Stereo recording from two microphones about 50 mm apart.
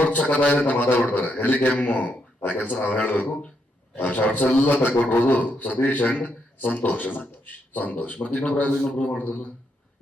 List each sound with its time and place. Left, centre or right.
0.0 s a man's voice: left